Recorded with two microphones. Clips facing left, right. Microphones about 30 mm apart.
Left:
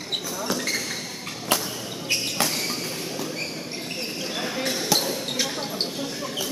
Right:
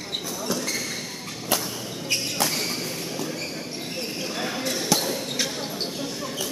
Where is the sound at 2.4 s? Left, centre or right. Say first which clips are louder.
Even; centre.